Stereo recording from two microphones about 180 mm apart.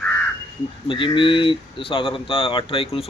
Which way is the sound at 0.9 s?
25° left (ahead or behind).